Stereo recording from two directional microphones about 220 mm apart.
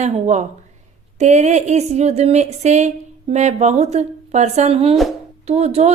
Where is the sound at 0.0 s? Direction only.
30° right (ahead or behind).